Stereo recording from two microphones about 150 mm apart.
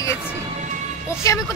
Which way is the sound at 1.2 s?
20° left (ahead or behind).